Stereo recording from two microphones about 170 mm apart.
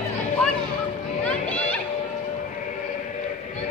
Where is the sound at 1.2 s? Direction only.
10° left (ahead or behind).